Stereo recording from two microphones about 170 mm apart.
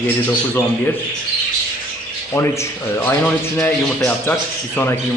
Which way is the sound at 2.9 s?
10° left (ahead or behind).